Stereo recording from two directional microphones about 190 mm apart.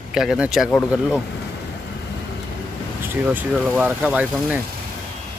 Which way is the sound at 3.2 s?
5° right (ahead or behind).